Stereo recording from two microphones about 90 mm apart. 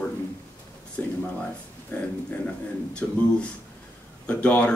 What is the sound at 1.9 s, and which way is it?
Speech, 20° left (ahead or behind).